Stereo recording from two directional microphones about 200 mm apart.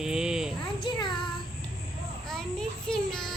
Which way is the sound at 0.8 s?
25° left (ahead or behind).